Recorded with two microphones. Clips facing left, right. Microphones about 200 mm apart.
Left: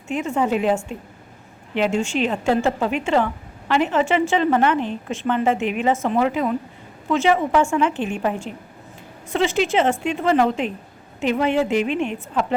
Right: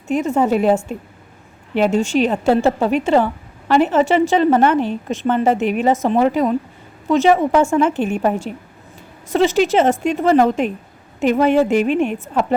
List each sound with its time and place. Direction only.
0.1 s a woman's voice: 40° right (ahead or behind)